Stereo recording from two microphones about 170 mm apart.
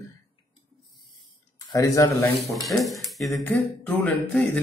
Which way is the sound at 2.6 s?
Centre (ahead or behind).